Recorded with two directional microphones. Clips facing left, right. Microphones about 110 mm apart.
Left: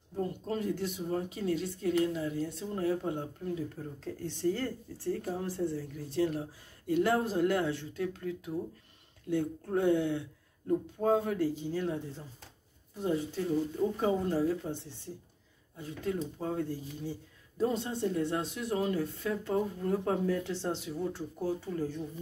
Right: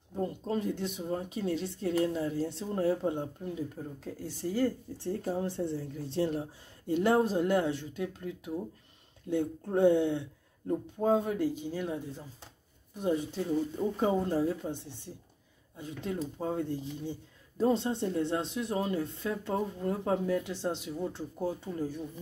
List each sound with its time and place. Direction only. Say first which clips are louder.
0.1 s speech: right 2 dB; 25° right (ahead or behind)
4.0 s speech: left 6 dB; 10° right (ahead or behind)
4.9 s speech: right 1 dB; 25° right (ahead or behind)